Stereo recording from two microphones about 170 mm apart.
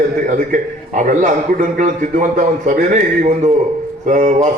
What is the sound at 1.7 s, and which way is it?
A man's voice, 50° right (ahead or behind).